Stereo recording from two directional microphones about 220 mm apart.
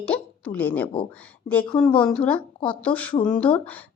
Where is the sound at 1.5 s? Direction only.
5° left (ahead or behind).